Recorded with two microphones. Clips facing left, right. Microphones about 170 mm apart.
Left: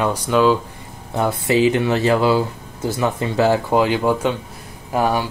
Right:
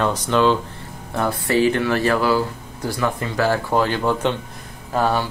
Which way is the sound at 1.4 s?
15° left (ahead or behind).